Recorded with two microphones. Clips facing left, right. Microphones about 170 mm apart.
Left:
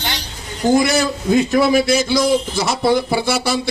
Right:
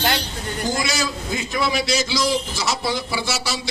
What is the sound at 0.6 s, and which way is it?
A man's voice, 60° left (ahead or behind).